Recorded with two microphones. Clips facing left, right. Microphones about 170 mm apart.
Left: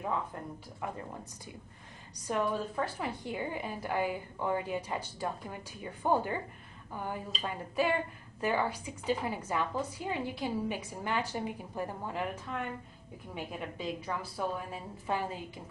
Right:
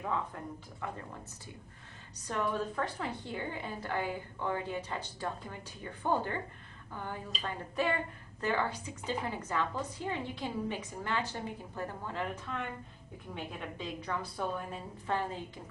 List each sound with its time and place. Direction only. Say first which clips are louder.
0.8 s a woman's voice: left 2 dB; 15° left (ahead or behind)
2.2 s a woman's voice: left 2 dB; 10° left (ahead or behind)